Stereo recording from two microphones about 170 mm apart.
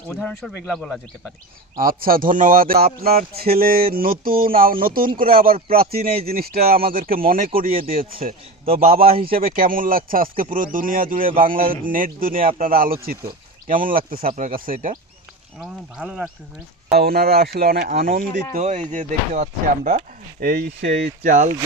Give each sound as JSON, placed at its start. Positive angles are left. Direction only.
{"t": 0.1, "sound": "speech", "side_deg": 0}
{"t": 1.8, "sound": "speech", "side_deg": -55}
{"t": 15.5, "sound": "speech", "side_deg": 0}
{"t": 16.9, "sound": "speech", "side_deg": -65}
{"t": 18.5, "sound": "speech", "side_deg": -45}
{"t": 20.4, "sound": "speech", "side_deg": -75}